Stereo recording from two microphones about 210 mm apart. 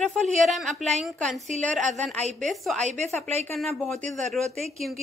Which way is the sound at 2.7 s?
35° right (ahead or behind).